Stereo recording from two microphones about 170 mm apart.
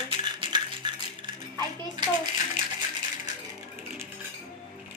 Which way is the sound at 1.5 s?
25° right (ahead or behind).